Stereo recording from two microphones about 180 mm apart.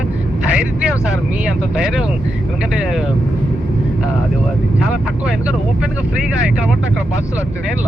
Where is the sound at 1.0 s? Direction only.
5° right (ahead or behind).